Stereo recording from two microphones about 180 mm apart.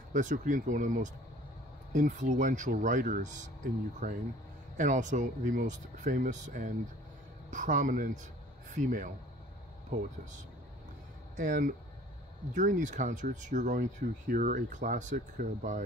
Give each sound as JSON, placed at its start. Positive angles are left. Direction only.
{"t": 0.1, "sound": "speech", "side_deg": -45}
{"t": 11.3, "sound": "speech", "side_deg": -45}